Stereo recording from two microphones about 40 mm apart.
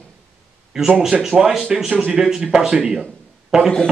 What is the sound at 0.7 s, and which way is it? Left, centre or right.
Speech, centre.